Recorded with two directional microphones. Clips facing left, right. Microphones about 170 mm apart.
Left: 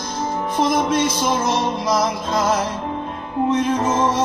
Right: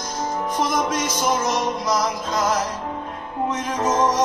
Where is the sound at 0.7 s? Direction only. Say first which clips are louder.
Left 4 dB; 30° left (ahead or behind).